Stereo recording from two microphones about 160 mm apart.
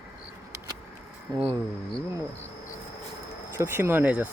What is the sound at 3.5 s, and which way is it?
Speech, 15° right (ahead or behind).